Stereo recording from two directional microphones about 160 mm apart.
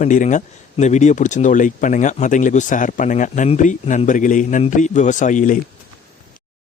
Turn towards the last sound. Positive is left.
turn(degrees=55)  # may be behind; listen again after turning